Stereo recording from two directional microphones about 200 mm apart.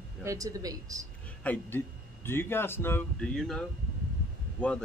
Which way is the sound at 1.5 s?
10° left (ahead or behind).